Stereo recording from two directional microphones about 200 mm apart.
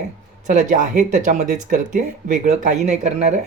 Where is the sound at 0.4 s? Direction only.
40° right (ahead or behind).